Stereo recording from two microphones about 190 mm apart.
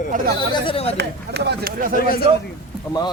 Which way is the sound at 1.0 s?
60° right (ahead or behind).